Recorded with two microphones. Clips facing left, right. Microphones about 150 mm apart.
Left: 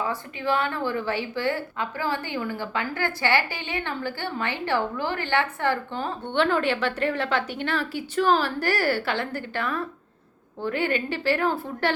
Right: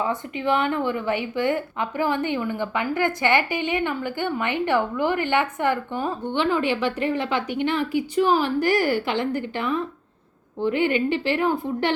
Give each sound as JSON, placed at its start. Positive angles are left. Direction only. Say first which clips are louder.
{"t": 0.0, "sound": "a woman's voice", "louder": "right 3 dB", "side_deg": -20}